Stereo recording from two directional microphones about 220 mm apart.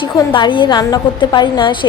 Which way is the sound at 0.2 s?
20° left (ahead or behind).